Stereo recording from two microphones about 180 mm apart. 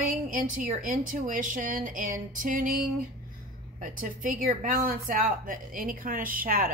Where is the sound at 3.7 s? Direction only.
45° right (ahead or behind).